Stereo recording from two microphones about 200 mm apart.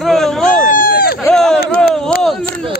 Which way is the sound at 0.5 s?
40° left (ahead or behind).